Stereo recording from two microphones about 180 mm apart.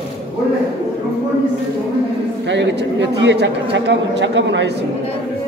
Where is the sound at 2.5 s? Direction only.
80° right.